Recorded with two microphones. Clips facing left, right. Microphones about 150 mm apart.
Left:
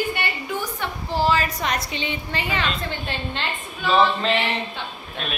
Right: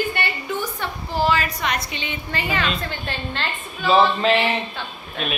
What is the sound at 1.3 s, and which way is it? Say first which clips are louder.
A woman's voice: even; 35° left (ahead or behind).